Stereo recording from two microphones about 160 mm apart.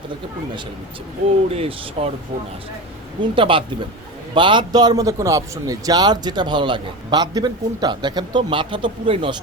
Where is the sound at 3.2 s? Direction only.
30° right (ahead or behind).